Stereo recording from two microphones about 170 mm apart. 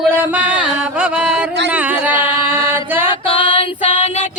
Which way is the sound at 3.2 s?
30° left (ahead or behind).